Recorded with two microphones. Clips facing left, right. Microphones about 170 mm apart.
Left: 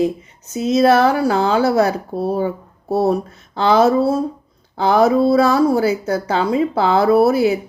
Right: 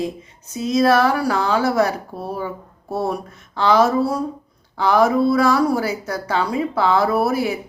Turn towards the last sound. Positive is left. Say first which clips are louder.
# left 6 dB
turn(degrees=25)  # may be behind; listen again after turning